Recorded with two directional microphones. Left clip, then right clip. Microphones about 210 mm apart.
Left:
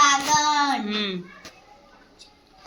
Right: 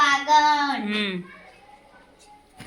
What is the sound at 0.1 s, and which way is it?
Child singing, 5° right (ahead or behind).